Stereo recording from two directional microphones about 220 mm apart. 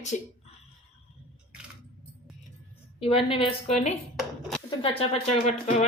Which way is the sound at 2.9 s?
25° left (ahead or behind).